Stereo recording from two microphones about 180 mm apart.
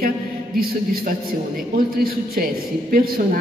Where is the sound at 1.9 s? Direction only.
55° right (ahead or behind).